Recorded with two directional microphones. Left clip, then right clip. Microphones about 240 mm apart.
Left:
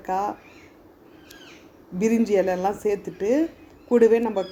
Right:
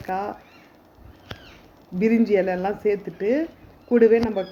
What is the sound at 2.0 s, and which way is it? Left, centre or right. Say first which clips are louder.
A woman's voice: right 1 dB; centre.